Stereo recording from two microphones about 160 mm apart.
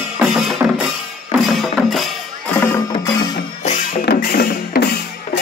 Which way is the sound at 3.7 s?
50° left (ahead or behind).